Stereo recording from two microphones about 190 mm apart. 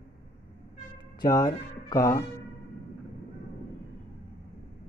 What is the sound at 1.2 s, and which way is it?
Speech, 20° left (ahead or behind).